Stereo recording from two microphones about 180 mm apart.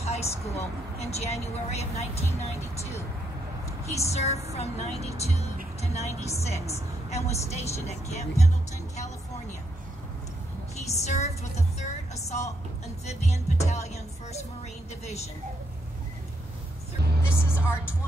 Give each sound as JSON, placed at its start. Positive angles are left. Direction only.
{"t": 0.0, "sound": "speech", "side_deg": 35}
{"t": 10.9, "sound": "a woman's voice", "side_deg": 40}
{"t": 17.3, "sound": "speech", "side_deg": -5}